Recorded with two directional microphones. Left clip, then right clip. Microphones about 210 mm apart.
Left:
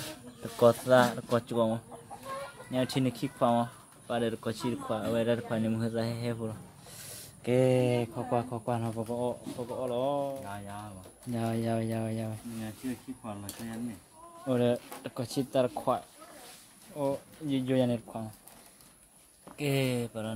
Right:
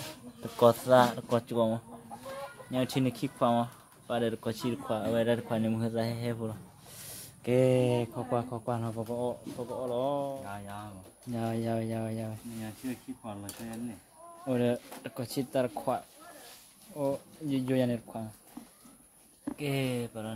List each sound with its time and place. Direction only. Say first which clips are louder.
0.4 s speech: even; centre (ahead or behind); by 13.7 s 15° left (ahead or behind)
14.5 s speech: left 2 dB; centre (ahead or behind)
17.8 s speech: left 1 dB; 5° left (ahead or behind)
19.5 s speech: left 3 dB; 20° left (ahead or behind)